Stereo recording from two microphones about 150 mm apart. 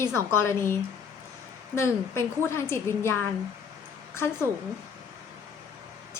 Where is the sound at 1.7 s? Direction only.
20° left (ahead or behind).